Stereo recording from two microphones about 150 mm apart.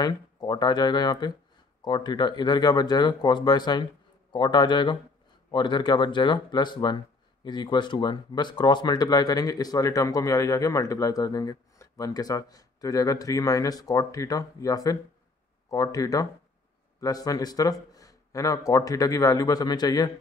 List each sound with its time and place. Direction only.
0.0 s a man's voice: 25° left (ahead or behind)